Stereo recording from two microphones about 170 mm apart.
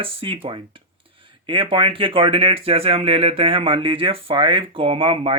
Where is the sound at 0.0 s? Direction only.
30° right (ahead or behind).